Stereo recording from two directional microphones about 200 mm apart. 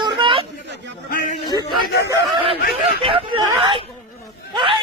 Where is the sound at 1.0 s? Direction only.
45° left (ahead or behind).